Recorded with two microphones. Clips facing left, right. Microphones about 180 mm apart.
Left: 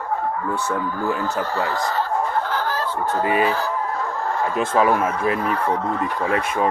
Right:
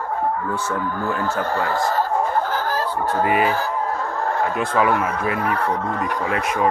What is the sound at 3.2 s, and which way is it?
Speech, 25° left (ahead or behind).